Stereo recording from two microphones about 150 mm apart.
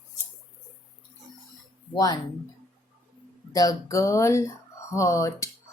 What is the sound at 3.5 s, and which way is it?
Speech, 25° left (ahead or behind).